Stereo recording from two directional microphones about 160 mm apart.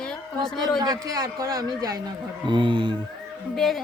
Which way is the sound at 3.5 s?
Centre (ahead or behind).